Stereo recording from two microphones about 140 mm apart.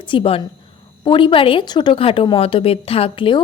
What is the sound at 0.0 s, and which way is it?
A woman's voice, 40° left (ahead or behind).